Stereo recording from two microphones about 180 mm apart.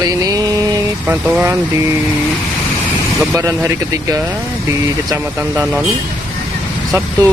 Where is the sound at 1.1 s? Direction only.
10° right (ahead or behind).